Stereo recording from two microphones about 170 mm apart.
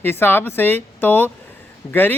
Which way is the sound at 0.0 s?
15° left (ahead or behind).